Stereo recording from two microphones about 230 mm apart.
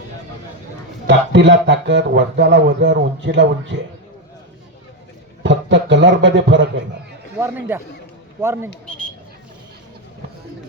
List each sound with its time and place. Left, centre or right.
1.0 s speech: right
5.4 s a man's voice: right
7.3 s a man's voice: centre